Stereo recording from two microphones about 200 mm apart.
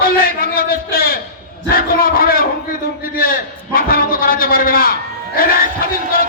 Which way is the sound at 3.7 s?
45° left (ahead or behind).